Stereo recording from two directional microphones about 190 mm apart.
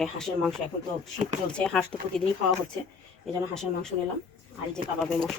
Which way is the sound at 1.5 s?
5° left (ahead or behind).